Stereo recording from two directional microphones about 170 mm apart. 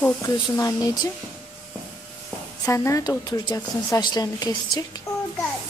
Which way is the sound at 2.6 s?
15° left (ahead or behind).